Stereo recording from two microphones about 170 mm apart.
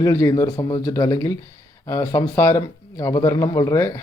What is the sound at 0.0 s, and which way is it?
Speech, 20° left (ahead or behind).